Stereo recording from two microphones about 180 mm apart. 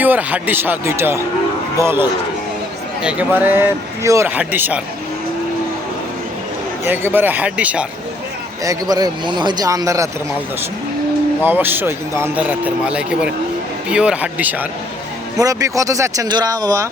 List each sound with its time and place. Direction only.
0.0 s a man's voice: 10° right (ahead or behind)
6.8 s a man's voice: 10° right (ahead or behind)
8.6 s speech: 20° right (ahead or behind)
11.4 s a man's voice: 10° right (ahead or behind)
15.4 s speech: 20° right (ahead or behind)